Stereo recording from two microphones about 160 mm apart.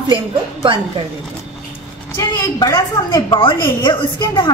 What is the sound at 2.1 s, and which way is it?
A woman's voice, 20° left (ahead or behind).